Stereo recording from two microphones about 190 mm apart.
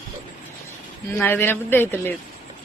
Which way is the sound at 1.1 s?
10° left (ahead or behind).